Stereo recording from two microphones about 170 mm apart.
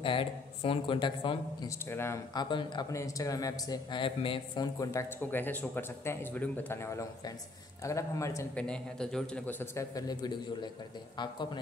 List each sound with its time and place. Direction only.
0.0 s a man's voice: 30° left (ahead or behind)
1.7 s speech: 15° left (ahead or behind)
2.5 s a man's voice: 25° left (ahead or behind)
4.7 s speech: 15° left (ahead or behind)
8.5 s a man's voice: 5° left (ahead or behind); by 11.6 s 25° left (ahead or behind)